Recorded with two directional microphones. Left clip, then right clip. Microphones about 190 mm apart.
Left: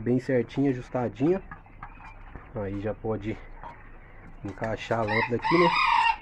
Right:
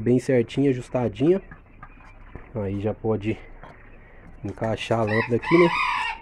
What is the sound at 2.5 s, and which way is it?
Speech, 35° right (ahead or behind).